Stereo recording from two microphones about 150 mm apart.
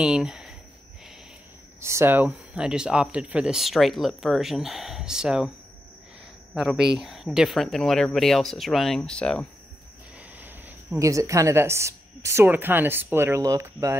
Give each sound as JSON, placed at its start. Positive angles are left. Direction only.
{"t": 0.0, "sound": "speech", "side_deg": -5}
{"t": 1.8, "sound": "speech", "side_deg": -15}
{"t": 6.5, "sound": "speech", "side_deg": -5}
{"t": 10.4, "sound": "a woman's voice", "side_deg": -20}